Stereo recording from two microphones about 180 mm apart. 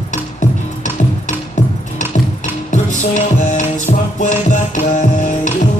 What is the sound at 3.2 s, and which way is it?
Music, 40° left (ahead or behind).